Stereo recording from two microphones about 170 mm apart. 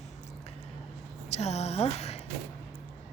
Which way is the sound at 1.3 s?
40° left (ahead or behind).